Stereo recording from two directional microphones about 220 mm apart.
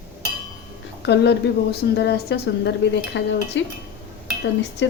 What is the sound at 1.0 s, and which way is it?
A woman's voice, 50° left (ahead or behind).